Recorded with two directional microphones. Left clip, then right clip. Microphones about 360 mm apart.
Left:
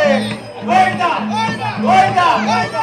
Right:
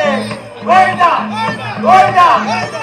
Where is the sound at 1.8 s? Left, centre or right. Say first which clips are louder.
Right 5 dB; centre.